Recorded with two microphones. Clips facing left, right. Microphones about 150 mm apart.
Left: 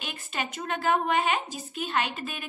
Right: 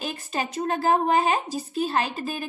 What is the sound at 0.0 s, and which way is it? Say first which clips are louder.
A woman's voice: right 5 dB; 35° right (ahead or behind).